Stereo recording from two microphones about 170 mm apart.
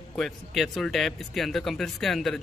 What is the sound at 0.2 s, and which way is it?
Speech, centre (ahead or behind).